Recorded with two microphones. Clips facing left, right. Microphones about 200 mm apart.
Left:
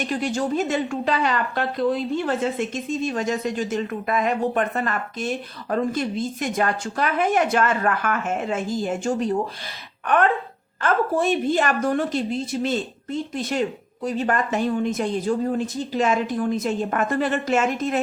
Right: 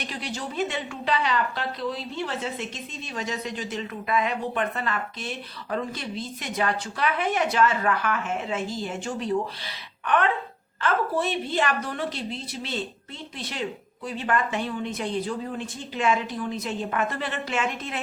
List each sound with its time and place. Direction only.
0.0 s a woman's voice: 50° left (ahead or behind)
10.8 s a woman's voice: 45° left (ahead or behind)